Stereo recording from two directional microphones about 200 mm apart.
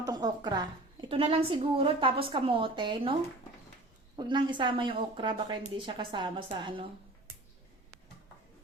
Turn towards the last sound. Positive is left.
turn(degrees=-25)  # may be behind; listen again after turning